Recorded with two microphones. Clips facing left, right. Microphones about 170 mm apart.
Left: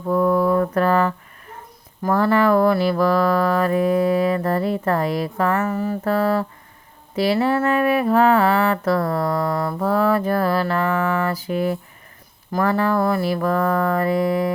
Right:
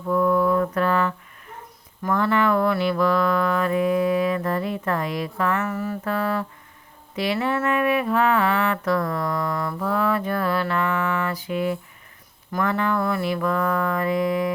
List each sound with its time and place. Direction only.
0.0 s mantra: 40° left (ahead or behind)
2.0 s music: 35° left (ahead or behind)